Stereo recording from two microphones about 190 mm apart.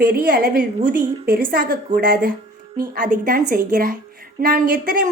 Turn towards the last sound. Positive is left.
turn(degrees=-50)  # may be behind; listen again after turning